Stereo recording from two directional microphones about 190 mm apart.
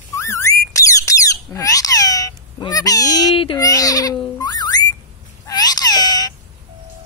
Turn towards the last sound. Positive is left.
turn(degrees=20)  # may be behind; listen again after turning